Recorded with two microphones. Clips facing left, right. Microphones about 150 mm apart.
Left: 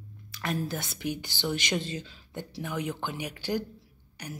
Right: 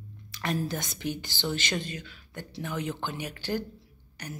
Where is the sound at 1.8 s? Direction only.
25° left (ahead or behind).